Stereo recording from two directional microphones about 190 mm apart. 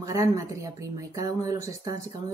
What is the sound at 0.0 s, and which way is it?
Speech, 15° right (ahead or behind).